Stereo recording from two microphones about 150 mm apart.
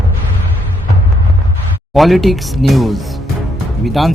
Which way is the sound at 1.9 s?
Centre (ahead or behind).